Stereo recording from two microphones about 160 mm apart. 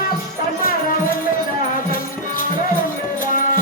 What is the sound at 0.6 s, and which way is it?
Music, 60° left (ahead or behind).